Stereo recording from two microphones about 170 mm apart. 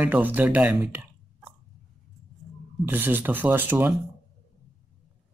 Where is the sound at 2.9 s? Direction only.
10° right (ahead or behind).